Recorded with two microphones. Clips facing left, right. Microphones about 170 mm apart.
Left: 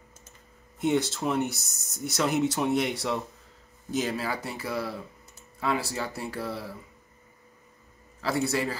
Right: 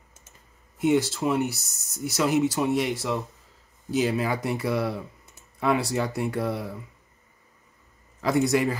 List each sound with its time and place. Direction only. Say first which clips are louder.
0.7 s speech: right 3 dB; 5° right (ahead or behind)
4.0 s speech: right 6 dB; 15° right (ahead or behind)
8.2 s a man's voice: right 5 dB; 15° right (ahead or behind)